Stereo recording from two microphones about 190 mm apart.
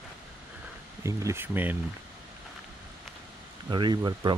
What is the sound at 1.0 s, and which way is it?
Speech, 15° right (ahead or behind).